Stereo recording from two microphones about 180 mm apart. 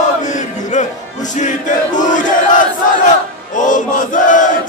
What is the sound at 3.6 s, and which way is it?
Chant, 45° left (ahead or behind).